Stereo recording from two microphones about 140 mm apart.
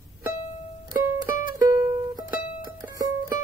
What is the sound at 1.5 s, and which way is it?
Music, 25° right (ahead or behind).